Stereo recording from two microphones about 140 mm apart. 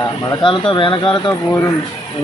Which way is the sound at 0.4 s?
35° left (ahead or behind).